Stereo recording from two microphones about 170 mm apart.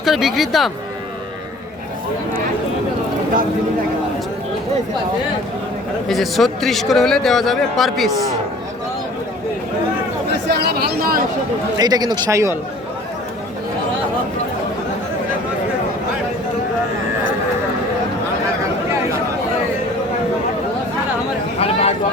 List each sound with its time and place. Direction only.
0.0 s a man's voice: centre (ahead or behind)
6.1 s a man's voice: centre (ahead or behind)
10.4 s speech: 75° right (ahead or behind)
11.8 s a man's voice: 25° right (ahead or behind)
21.6 s chatter: 40° left (ahead or behind)